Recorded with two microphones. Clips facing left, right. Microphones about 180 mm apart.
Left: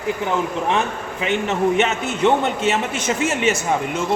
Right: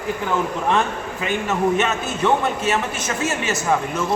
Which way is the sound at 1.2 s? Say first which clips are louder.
Left 2 dB; 20° left (ahead or behind).